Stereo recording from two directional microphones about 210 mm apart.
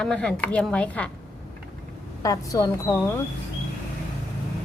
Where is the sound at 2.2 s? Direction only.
15° left (ahead or behind).